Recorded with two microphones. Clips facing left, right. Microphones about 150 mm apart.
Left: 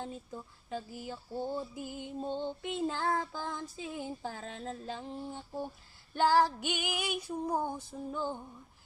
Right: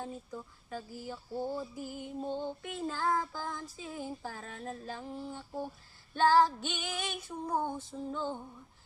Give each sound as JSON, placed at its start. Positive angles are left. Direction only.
{"t": 0.0, "sound": "female singing", "side_deg": 20}